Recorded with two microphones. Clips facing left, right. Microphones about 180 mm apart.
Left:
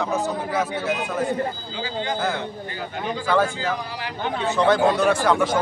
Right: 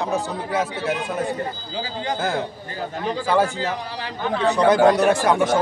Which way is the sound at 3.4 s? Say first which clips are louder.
Right 1 dB; 40° right (ahead or behind).